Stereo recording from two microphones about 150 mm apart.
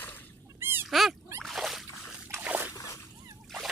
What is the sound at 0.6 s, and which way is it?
Dog, 15° right (ahead or behind).